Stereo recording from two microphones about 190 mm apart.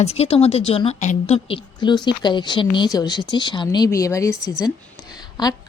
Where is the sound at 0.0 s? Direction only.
35° left (ahead or behind).